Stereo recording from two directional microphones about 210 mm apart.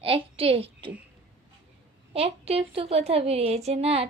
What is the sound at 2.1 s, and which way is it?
A woman's voice, 30° right (ahead or behind).